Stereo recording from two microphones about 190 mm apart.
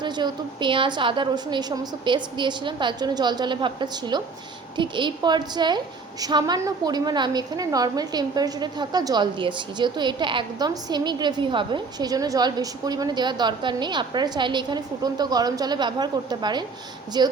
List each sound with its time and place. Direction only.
0.0 s a woman's voice: 25° right (ahead or behind)